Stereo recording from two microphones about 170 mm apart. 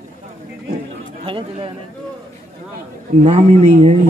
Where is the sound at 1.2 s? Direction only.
30° right (ahead or behind).